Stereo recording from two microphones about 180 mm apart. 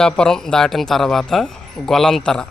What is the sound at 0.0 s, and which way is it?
Speech, 5° left (ahead or behind).